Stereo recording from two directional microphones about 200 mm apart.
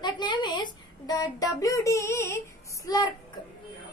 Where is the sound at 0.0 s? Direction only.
20° left (ahead or behind).